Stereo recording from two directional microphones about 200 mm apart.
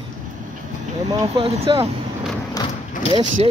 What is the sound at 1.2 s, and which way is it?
Speech, 30° right (ahead or behind).